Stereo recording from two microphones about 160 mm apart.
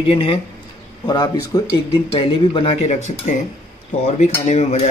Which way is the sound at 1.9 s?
35° left (ahead or behind).